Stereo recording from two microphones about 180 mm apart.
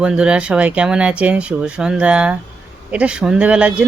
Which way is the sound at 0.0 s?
5° right (ahead or behind).